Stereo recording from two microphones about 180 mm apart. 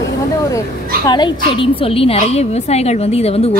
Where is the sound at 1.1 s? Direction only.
25° left (ahead or behind).